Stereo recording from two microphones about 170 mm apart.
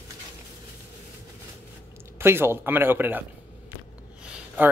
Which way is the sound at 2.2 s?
15° right (ahead or behind).